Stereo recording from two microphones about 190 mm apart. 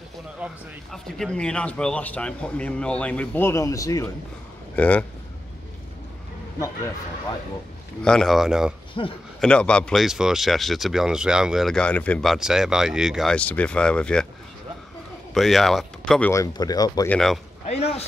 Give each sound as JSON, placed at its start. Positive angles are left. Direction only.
{"t": 0.4, "sound": "speech", "side_deg": -5}
{"t": 8.0, "sound": "speech", "side_deg": 5}
{"t": 9.0, "sound": "speech", "side_deg": 30}
{"t": 9.4, "sound": "speech", "side_deg": 5}
{"t": 15.3, "sound": "speech", "side_deg": 0}
{"t": 17.1, "sound": "speech", "side_deg": 0}
{"t": 17.6, "sound": "speech", "side_deg": 35}